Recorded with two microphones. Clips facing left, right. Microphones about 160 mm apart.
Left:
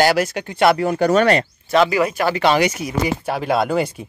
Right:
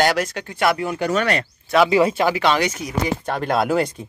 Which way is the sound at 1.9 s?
25° right (ahead or behind).